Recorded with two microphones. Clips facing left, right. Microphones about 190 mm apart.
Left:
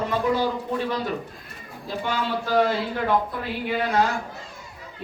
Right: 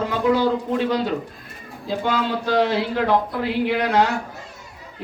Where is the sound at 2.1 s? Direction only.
85° right.